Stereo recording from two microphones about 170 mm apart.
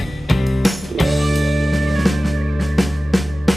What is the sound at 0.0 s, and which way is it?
Music, centre (ahead or behind).